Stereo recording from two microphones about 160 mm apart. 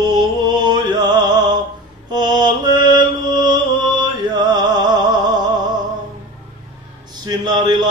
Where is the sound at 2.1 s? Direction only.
25° right (ahead or behind).